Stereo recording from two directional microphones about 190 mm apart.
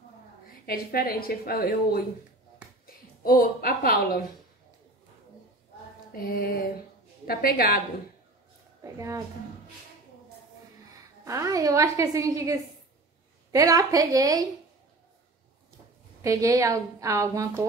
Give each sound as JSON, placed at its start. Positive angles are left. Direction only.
{"t": 0.7, "sound": "speech", "side_deg": 50}
{"t": 3.3, "sound": "speech", "side_deg": 50}
{"t": 6.1, "sound": "speech", "side_deg": 50}
{"t": 8.8, "sound": "a woman's voice", "side_deg": -15}
{"t": 11.2, "sound": "a woman's voice", "side_deg": -15}
{"t": 16.2, "sound": "a woman's voice", "side_deg": -15}